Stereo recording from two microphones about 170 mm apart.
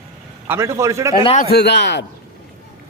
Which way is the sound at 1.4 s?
70° left (ahead or behind).